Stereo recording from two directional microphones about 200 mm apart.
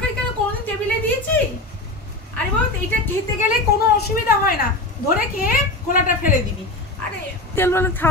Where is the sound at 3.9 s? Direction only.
50° left (ahead or behind).